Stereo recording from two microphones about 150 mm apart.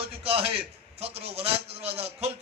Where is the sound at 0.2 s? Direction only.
40° right (ahead or behind).